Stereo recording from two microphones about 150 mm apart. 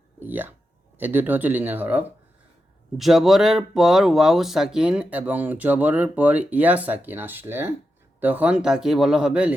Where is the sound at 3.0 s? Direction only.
Centre (ahead or behind).